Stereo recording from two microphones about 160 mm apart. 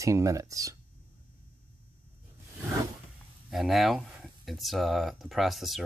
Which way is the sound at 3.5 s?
Centre (ahead or behind).